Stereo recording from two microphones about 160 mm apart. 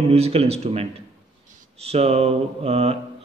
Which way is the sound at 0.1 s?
40° right (ahead or behind).